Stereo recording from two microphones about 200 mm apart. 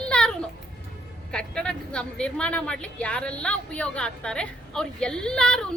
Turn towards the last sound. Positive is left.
turn(degrees=5)  # may be behind; listen again after turning